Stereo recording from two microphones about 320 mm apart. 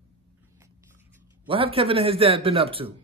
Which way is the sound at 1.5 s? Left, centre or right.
Centre.